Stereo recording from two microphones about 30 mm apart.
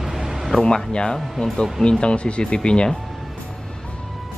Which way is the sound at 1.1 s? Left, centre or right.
Centre.